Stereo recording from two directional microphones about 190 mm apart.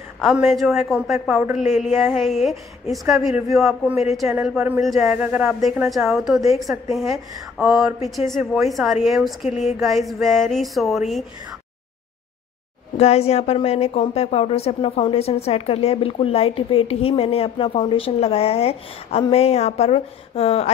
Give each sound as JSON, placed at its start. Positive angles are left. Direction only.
{"t": 0.5, "sound": "a woman's voice", "side_deg": 0}
{"t": 9.5, "sound": "a woman's voice", "side_deg": 35}
{"t": 9.8, "sound": "a woman's voice", "side_deg": 0}
{"t": 12.9, "sound": "a woman's voice", "side_deg": 35}